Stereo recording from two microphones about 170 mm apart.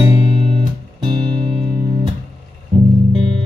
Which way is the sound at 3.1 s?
30° right (ahead or behind).